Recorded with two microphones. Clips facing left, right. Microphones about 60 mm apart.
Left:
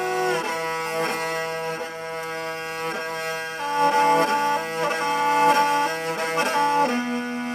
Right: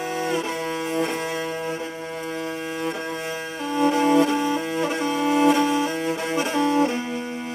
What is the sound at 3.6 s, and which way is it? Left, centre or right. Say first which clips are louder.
Music: left 1 dB; left.